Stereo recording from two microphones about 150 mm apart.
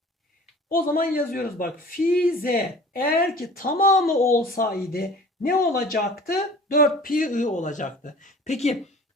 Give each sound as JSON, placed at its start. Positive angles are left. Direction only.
{"t": 0.7, "sound": "speech", "side_deg": 75}